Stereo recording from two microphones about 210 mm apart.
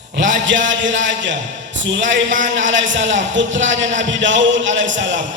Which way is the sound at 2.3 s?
35° right (ahead or behind).